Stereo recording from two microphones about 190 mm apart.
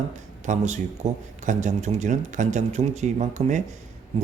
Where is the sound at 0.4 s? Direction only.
40° right (ahead or behind).